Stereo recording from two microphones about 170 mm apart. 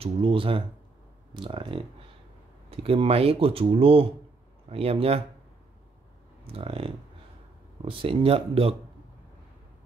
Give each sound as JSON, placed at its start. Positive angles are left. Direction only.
{"t": 0.0, "sound": "speech", "side_deg": -30}
{"t": 6.4, "sound": "speech", "side_deg": -35}